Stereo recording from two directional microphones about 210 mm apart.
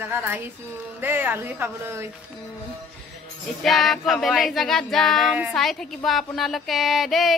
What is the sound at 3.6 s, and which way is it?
Speech, centre (ahead or behind).